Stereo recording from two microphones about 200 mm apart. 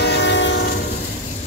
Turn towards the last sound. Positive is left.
turn(degrees=65)  # may be behind; listen again after turning